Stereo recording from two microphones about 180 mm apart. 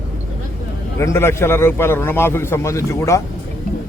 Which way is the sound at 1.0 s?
15° left (ahead or behind).